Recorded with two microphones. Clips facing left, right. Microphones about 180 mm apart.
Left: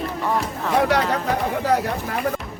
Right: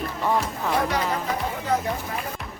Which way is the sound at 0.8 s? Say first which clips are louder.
Left 7 dB; 70° left (ahead or behind).